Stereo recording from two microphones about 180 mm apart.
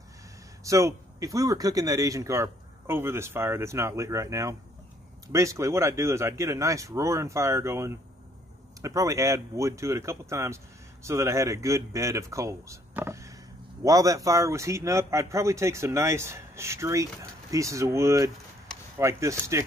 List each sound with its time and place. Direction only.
0.7 s a man's voice: 15° right (ahead or behind)